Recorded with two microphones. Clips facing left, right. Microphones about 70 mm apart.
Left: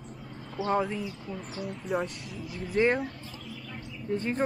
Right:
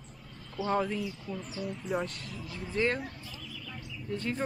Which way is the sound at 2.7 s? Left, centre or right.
Centre.